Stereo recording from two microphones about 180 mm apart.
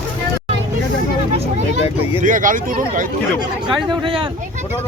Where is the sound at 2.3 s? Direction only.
45° right (ahead or behind).